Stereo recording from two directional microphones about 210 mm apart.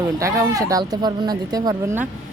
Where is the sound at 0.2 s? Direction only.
15° right (ahead or behind).